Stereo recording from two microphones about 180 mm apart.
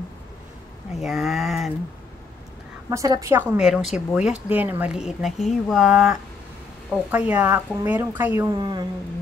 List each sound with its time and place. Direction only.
0.9 s speech: centre (ahead or behind)
2.9 s a woman's voice: 20° right (ahead or behind)
8.5 s speech: 25° right (ahead or behind)